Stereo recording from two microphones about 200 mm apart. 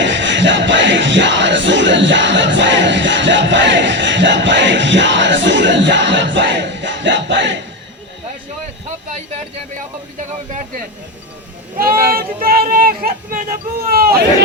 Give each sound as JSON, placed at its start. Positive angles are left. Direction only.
{"t": 0.0, "sound": "music", "side_deg": -65}
{"t": 10.2, "sound": "a sound", "side_deg": -40}
{"t": 11.8, "sound": "speech", "side_deg": -45}